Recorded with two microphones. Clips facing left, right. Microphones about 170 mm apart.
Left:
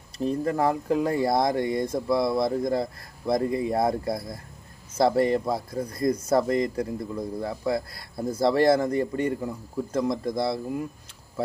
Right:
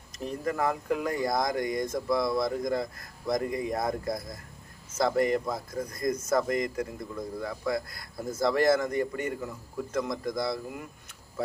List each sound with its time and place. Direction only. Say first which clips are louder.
0.2 s speech: left 5 dB; 30° left (ahead or behind)